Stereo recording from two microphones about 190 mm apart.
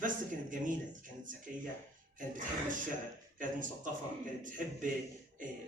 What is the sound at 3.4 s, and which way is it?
Speech, 45° right (ahead or behind).